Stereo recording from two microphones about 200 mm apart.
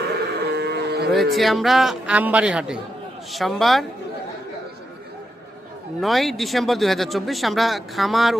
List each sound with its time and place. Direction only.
0.1 s moo: 55° right (ahead or behind)
1.1 s speech: centre (ahead or behind)
6.0 s speech: centre (ahead or behind)